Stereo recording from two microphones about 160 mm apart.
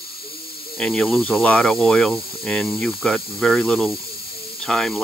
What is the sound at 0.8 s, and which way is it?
Speech, 5° left (ahead or behind).